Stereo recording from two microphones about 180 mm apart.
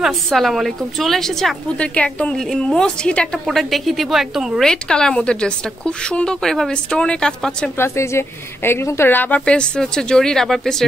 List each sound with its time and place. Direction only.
0.0 s a woman's voice: centre (ahead or behind)